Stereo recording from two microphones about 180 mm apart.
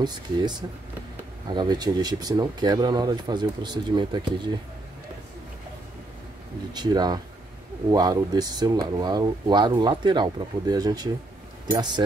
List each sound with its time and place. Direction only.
0.0 s speech: 25° right (ahead or behind)
6.7 s speech: 20° right (ahead or behind)